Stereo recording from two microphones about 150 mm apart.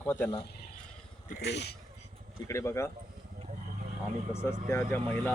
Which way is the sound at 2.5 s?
20° left (ahead or behind).